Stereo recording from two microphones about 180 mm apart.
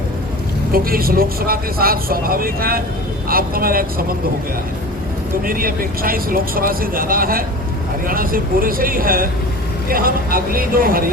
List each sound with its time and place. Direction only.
0.7 s speech: 55° right (ahead or behind)
5.5 s speech: 50° right (ahead or behind)